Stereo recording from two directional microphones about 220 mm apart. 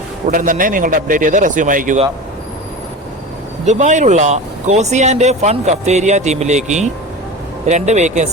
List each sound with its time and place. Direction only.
0.3 s speech: 35° right (ahead or behind)
3.7 s speech: 35° right (ahead or behind)